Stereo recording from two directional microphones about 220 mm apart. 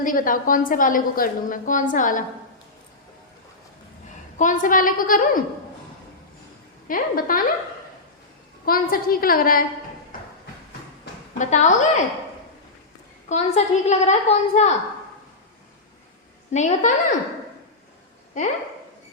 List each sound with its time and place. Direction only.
0.0 s a woman's voice: 40° left (ahead or behind)
4.4 s a woman's voice: 35° left (ahead or behind)
6.8 s a woman's voice: 40° left (ahead or behind)
8.6 s a woman's voice: 40° left (ahead or behind)
11.3 s a woman's voice: 35° left (ahead or behind)
13.2 s a woman's voice: 30° left (ahead or behind)
16.5 s a woman's voice: 30° left (ahead or behind)